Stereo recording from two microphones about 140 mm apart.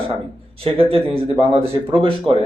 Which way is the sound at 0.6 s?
45° right (ahead or behind).